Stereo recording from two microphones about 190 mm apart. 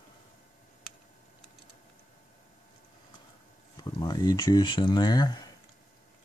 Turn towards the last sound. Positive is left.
turn(degrees=20)  # may be behind; listen again after turning